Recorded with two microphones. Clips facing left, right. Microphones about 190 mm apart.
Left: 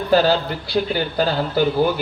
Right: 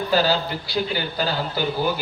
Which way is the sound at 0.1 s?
55° left (ahead or behind).